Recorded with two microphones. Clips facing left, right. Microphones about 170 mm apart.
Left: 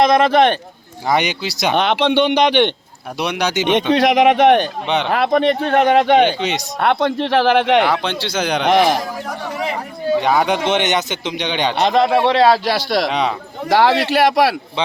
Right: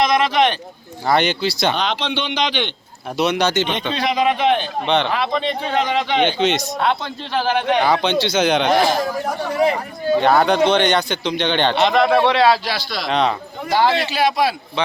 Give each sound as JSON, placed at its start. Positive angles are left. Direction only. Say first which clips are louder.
{"t": 0.1, "sound": "speech", "louder": "left 4 dB", "side_deg": 50}
{"t": 1.0, "sound": "speech", "louder": "right 1 dB", "side_deg": 10}
{"t": 1.7, "sound": "speech", "louder": "left 7 dB", "side_deg": 60}
{"t": 3.2, "sound": "speech", "louder": "right 2 dB", "side_deg": 10}
{"t": 3.9, "sound": "speech", "louder": "left 5 dB", "side_deg": 80}
{"t": 6.7, "sound": "speech", "louder": "left 5 dB", "side_deg": 65}
{"t": 7.9, "sound": "speech", "louder": "right 3 dB", "side_deg": 0}
{"t": 8.6, "sound": "speech", "louder": "left 2 dB", "side_deg": 75}
{"t": 10.2, "sound": "speech", "louder": "right 3 dB", "side_deg": 10}
{"t": 11.8, "sound": "a man's voice", "louder": "left 2 dB", "side_deg": 35}
{"t": 12.6, "sound": "speech", "louder": "left 8 dB", "side_deg": 65}
{"t": 13.1, "sound": "speech", "louder": "right 1 dB", "side_deg": 10}
{"t": 13.7, "sound": "speech", "louder": "left 3 dB", "side_deg": 75}